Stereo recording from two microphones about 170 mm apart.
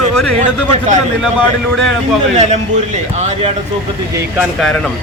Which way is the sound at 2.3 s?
40° right (ahead or behind).